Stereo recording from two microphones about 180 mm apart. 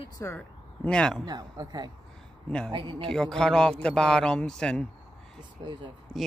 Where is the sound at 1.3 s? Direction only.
20° right (ahead or behind).